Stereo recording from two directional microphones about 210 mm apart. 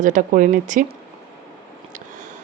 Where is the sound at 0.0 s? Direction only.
35° right (ahead or behind).